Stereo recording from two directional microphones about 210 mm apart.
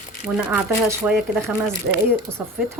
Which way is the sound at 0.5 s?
10° right (ahead or behind).